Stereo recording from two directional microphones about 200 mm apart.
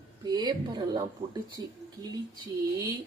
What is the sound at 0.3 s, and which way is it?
Speech, 20° right (ahead or behind).